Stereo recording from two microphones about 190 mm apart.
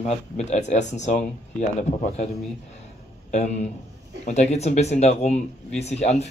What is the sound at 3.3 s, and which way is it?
Speech, 35° left (ahead or behind).